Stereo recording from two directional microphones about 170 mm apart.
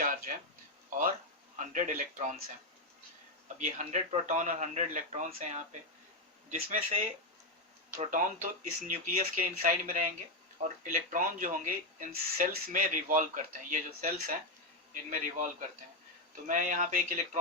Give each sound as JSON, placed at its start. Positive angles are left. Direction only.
{"t": 0.9, "sound": "speech", "side_deg": -50}
{"t": 3.8, "sound": "speech", "side_deg": -45}
{"t": 16.5, "sound": "speech", "side_deg": -50}